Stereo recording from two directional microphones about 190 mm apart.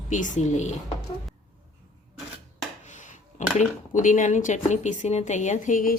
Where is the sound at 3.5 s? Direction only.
40° left (ahead or behind).